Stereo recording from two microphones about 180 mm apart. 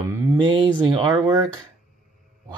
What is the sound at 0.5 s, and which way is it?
Speech, 25° right (ahead or behind).